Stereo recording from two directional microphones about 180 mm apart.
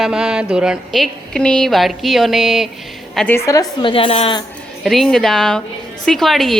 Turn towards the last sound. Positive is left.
turn(degrees=0)  # may be behind; listen again after turning